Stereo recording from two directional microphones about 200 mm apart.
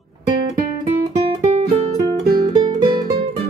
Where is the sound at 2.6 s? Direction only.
20° right (ahead or behind).